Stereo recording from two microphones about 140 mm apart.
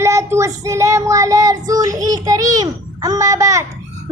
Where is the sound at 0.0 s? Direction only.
20° right (ahead or behind).